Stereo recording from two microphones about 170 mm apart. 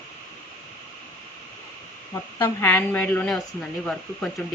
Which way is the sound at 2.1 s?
15° left (ahead or behind).